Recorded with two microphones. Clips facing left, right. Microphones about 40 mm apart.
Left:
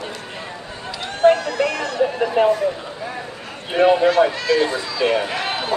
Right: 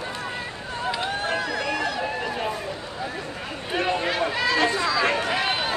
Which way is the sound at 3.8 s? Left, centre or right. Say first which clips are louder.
Left 12 dB; left.